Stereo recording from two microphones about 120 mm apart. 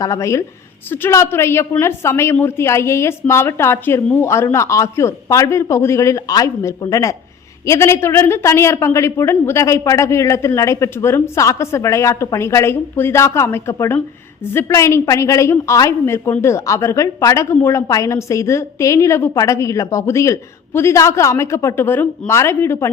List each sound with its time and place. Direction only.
0.0 s a woman's voice: 25° left (ahead or behind)